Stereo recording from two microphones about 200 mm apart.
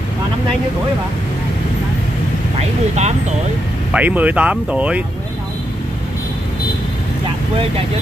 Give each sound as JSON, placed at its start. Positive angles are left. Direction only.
{"t": 3.0, "sound": "speech", "side_deg": -35}
{"t": 3.9, "sound": "speech", "side_deg": -5}